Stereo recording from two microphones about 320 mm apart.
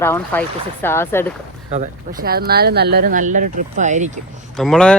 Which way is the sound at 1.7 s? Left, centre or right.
Right.